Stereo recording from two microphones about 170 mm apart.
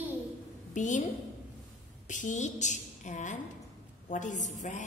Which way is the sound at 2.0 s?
45° left (ahead or behind).